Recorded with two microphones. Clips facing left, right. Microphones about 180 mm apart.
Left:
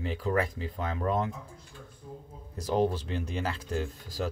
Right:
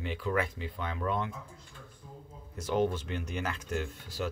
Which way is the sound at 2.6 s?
35° left (ahead or behind).